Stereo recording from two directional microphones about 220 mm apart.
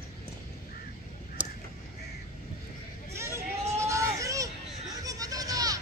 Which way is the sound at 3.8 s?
15° right (ahead or behind).